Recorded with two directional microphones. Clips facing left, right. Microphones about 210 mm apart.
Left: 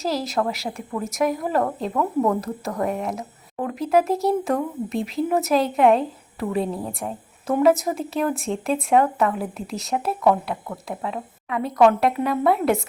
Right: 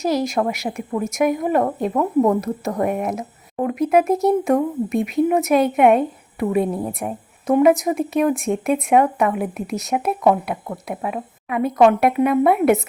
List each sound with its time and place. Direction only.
0.0 s a woman's voice: 15° right (ahead or behind)